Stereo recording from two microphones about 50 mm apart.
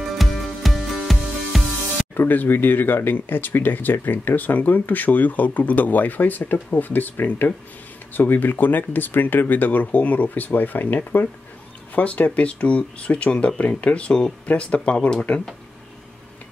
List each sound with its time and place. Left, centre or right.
0.2 s music: centre
2.1 s speech: left